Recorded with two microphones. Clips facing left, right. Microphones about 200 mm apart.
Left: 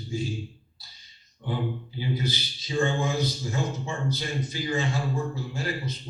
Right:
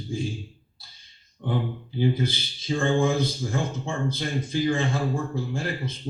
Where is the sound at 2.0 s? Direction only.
50° right (ahead or behind).